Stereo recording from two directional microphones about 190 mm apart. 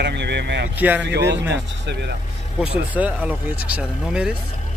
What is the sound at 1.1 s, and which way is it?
Speech, 65° right (ahead or behind).